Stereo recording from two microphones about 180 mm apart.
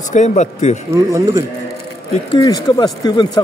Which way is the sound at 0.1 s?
40° left (ahead or behind).